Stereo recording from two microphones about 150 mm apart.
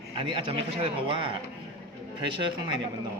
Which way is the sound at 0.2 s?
35° right (ahead or behind).